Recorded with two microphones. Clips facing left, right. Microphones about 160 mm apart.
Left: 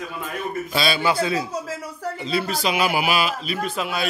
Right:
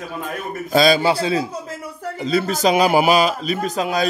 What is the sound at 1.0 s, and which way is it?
Speech, 30° right (ahead or behind).